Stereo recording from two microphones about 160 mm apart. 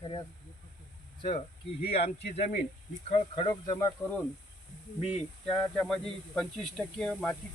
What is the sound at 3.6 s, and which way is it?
Speech, 20° left (ahead or behind).